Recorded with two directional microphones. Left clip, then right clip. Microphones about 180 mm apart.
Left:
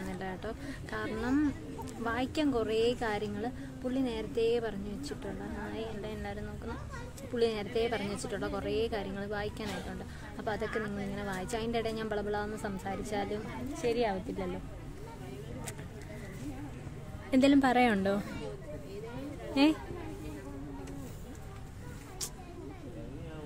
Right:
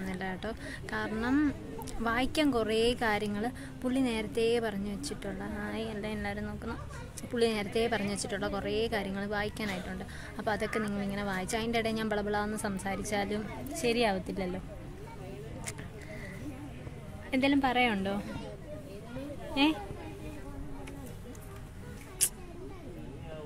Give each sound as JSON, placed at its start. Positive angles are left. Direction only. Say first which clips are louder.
{"t": 0.1, "sound": "a woman's voice", "louder": "right 4 dB", "side_deg": 0}
{"t": 17.3, "sound": "a woman's voice", "louder": "left 2 dB", "side_deg": 45}
{"t": 19.5, "sound": "speech", "louder": "left 1 dB", "side_deg": 45}